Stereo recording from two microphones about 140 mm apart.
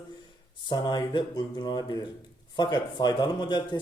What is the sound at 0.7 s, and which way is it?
Speech, 30° left (ahead or behind).